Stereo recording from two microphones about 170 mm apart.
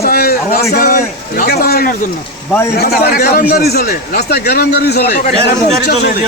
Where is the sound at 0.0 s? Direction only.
60° left (ahead or behind).